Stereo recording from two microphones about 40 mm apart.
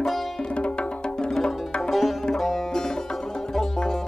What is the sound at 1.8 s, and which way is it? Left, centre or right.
Sitar, centre.